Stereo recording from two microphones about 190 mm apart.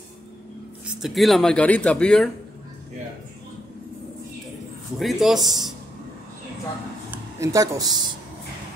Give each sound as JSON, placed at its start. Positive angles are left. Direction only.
{"t": 0.8, "sound": "speech", "side_deg": 0}
{"t": 4.9, "sound": "speech", "side_deg": 0}
{"t": 7.1, "sound": "speech", "side_deg": -15}